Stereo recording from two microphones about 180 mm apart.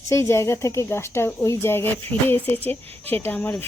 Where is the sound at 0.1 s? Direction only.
15° left (ahead or behind).